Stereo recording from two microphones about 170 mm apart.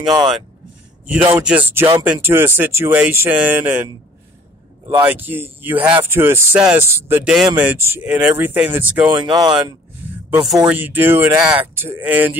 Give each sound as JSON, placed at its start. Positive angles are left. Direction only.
{"t": 1.0, "sound": "speech", "side_deg": -10}
{"t": 5.0, "sound": "speech", "side_deg": -10}
{"t": 9.1, "sound": "speech", "side_deg": -25}
{"t": 10.3, "sound": "speech", "side_deg": 0}